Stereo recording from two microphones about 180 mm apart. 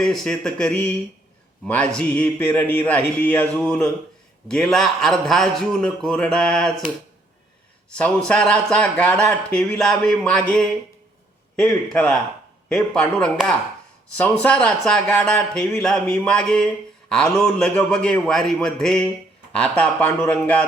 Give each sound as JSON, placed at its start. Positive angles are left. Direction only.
{"t": 0.0, "sound": "speech", "side_deg": 5}
{"t": 8.3, "sound": "speech", "side_deg": 5}